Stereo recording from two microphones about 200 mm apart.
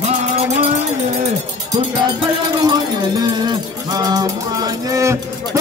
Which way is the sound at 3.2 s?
20° right (ahead or behind).